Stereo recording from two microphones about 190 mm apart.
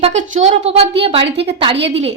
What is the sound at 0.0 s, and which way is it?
Speech, 40° right (ahead or behind).